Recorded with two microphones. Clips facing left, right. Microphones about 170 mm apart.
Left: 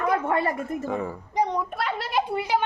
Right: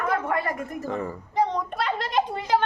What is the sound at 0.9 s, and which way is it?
Speech, 10° left (ahead or behind).